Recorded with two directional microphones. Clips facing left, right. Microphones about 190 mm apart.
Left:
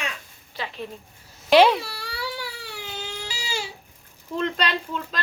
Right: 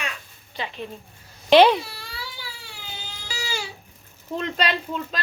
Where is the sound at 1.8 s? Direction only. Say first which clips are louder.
Left 5 dB; 70° left (ahead or behind).